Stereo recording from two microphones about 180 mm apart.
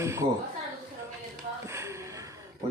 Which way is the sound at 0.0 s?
15° right (ahead or behind).